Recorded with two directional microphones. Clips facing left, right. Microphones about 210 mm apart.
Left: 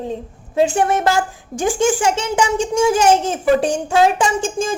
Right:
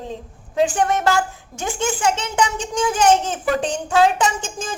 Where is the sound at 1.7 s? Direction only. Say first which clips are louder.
Left 3 dB; 10° left (ahead or behind).